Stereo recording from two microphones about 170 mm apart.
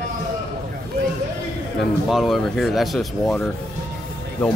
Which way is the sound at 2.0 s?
Centre (ahead or behind).